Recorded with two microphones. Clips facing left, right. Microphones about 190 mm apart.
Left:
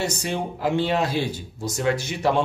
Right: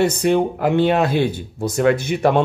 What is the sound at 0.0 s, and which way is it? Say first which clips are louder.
Speech: right 10 dB; 60° right (ahead or behind).